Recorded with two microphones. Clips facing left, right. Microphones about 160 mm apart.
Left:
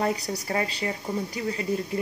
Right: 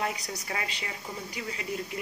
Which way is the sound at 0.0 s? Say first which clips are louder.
Left 6 dB; 35° left (ahead or behind).